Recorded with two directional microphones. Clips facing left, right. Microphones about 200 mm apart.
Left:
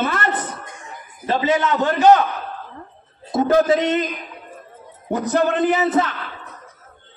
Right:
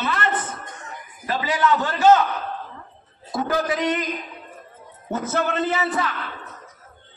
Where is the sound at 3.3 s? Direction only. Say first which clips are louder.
Left 7 dB; 20° left (ahead or behind).